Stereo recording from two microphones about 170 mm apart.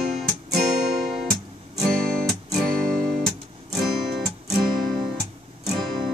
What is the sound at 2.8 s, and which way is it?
Music, 50° right (ahead or behind).